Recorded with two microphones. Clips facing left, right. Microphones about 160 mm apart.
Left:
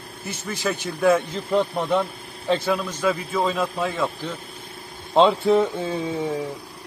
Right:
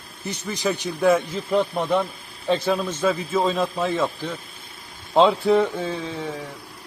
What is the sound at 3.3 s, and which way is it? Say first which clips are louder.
Speech: right 1 dB; 20° right (ahead or behind).